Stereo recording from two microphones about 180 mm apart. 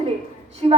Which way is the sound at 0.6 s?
30° right (ahead or behind).